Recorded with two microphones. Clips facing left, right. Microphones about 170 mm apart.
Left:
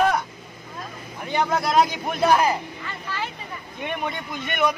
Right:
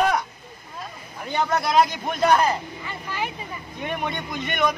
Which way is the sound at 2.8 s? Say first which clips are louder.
Right 1 dB; 15° right (ahead or behind).